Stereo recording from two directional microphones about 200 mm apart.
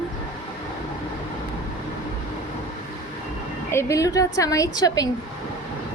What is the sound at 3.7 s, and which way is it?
A woman's voice, 15° left (ahead or behind).